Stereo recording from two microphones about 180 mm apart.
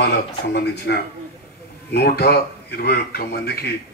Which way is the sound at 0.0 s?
65° left (ahead or behind).